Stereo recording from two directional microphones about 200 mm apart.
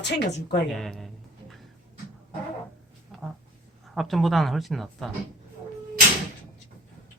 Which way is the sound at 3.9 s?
Centre (ahead or behind).